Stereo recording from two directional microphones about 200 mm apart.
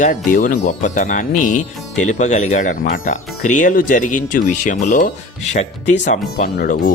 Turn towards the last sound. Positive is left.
turn(degrees=45)  # may be behind; listen again after turning